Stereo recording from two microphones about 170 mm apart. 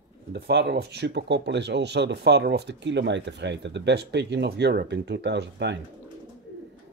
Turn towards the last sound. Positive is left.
turn(degrees=-90)